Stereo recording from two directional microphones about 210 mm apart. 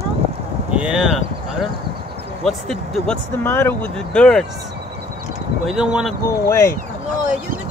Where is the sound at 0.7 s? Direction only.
5° right (ahead or behind).